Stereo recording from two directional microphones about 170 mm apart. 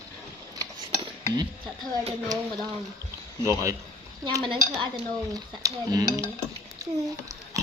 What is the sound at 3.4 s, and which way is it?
Speech, 20° right (ahead or behind).